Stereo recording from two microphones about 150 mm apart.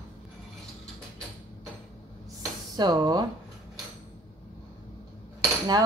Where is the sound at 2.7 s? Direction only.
30° right (ahead or behind).